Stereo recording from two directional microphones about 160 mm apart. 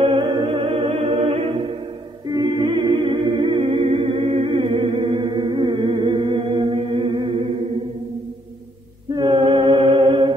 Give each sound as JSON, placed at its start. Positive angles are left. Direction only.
{"t": 0.0, "sound": "music", "side_deg": -30}
{"t": 0.7, "sound": "music", "side_deg": -45}
{"t": 2.3, "sound": "humming", "side_deg": -30}
{"t": 4.5, "sound": "music", "side_deg": -30}
{"t": 9.1, "sound": "a capella", "side_deg": -30}